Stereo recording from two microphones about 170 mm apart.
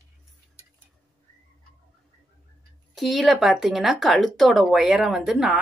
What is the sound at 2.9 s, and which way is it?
Speech, centre (ahead or behind).